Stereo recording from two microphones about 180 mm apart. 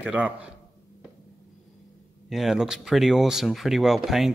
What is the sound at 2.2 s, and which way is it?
Speech, centre (ahead or behind).